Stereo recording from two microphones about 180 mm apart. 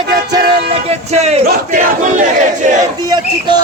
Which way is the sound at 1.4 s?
50° right (ahead or behind).